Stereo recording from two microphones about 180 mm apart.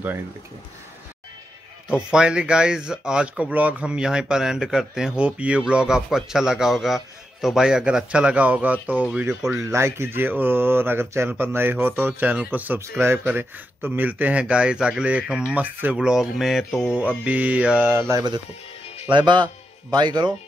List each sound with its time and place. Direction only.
1.9 s speech: 5° right (ahead or behind)
9.5 s speech: 15° right (ahead or behind)